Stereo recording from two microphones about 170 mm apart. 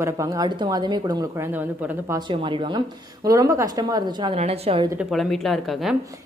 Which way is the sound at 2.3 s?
30° right (ahead or behind).